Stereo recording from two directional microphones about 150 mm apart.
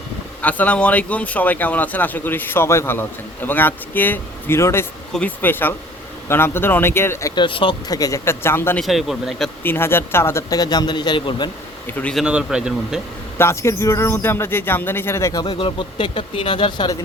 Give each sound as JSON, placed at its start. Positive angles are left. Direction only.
{"t": 0.4, "sound": "speech", "side_deg": 10}
{"t": 7.4, "sound": "speech", "side_deg": 35}
{"t": 7.9, "sound": "speech", "side_deg": 20}
{"t": 8.8, "sound": "speech", "side_deg": 0}
{"t": 9.6, "sound": "speech", "side_deg": 15}
{"t": 11.9, "sound": "speech", "side_deg": 10}
{"t": 12.1, "sound": "speech", "side_deg": -5}
{"t": 13.4, "sound": "speech", "side_deg": 20}